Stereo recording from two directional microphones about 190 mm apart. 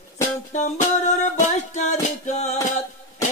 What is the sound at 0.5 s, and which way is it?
Music, 40° left (ahead or behind).